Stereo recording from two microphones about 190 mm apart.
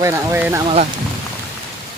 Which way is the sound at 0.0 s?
15° right (ahead or behind).